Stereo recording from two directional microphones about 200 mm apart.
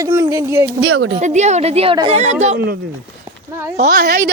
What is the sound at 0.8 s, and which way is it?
Speech, 90° right.